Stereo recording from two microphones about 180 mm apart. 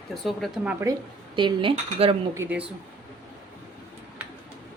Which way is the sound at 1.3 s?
30° right (ahead or behind).